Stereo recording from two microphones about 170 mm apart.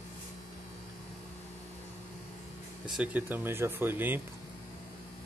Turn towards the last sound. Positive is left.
turn(degrees=-10)  # may be behind; listen again after turning